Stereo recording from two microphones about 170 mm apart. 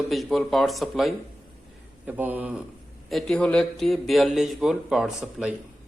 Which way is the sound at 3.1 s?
5° left (ahead or behind).